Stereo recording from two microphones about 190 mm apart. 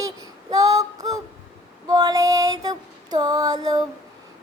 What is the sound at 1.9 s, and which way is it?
Female singing, 20° right (ahead or behind).